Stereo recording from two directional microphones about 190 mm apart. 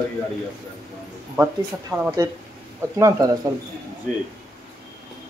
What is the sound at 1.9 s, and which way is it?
Speech, 10° right (ahead or behind).